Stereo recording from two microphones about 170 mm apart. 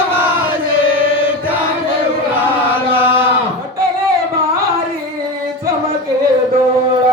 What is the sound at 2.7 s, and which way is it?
Chant, 10° right (ahead or behind).